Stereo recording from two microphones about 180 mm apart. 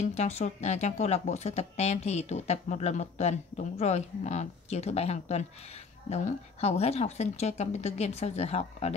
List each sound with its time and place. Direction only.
0.0 s speech: 40° left (ahead or behind)